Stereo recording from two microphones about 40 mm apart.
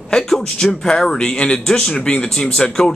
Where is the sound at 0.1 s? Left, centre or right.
Centre.